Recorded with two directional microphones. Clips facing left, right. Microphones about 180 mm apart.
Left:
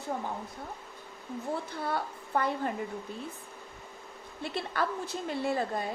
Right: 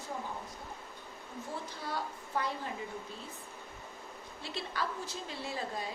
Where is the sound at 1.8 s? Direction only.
55° left (ahead or behind).